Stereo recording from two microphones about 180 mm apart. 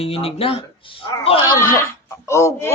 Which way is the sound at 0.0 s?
35° left (ahead or behind).